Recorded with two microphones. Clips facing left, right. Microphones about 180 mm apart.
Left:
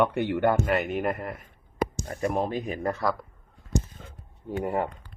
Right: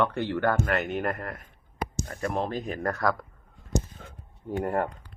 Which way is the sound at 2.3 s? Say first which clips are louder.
Left 2 dB; 10° left (ahead or behind).